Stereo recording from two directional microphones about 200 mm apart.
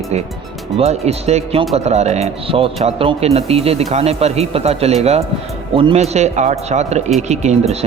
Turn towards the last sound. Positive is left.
turn(degrees=-35)  # may be behind; listen again after turning